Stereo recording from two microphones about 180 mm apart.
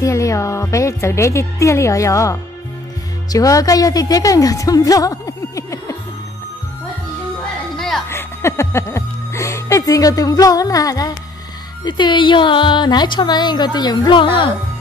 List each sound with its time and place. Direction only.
0.0 s a woman's voice: 15° left (ahead or behind)
7.7 s music: centre (ahead or behind)
8.1 s music: 15° left (ahead or behind)
11.8 s speech: 25° left (ahead or behind)